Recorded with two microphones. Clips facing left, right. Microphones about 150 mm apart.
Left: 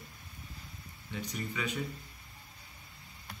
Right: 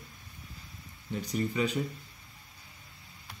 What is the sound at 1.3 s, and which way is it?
Speech, 35° right (ahead or behind).